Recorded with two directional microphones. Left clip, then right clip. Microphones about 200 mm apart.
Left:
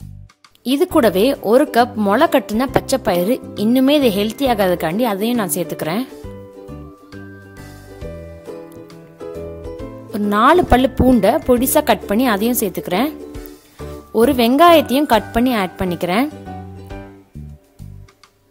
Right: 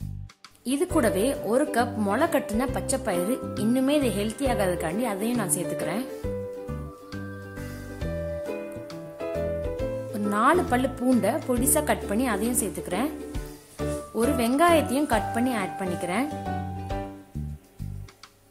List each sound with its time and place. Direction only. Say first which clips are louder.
0.7 s speech: left 10 dB; 40° left (ahead or behind)
10.1 s speech: left 10 dB; 45° left (ahead or behind)
14.1 s speech: left 12 dB; 45° left (ahead or behind)